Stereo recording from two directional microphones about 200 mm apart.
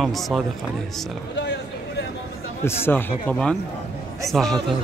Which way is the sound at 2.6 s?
10° left (ahead or behind).